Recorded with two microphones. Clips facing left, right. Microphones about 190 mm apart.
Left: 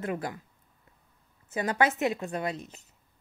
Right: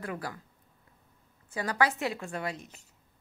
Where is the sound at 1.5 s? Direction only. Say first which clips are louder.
Left 2 dB; 20° left (ahead or behind).